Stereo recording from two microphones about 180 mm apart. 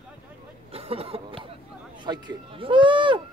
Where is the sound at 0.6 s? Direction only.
35° right (ahead or behind).